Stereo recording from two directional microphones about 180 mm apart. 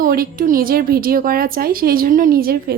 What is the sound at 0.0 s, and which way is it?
Speech, 50° right (ahead or behind).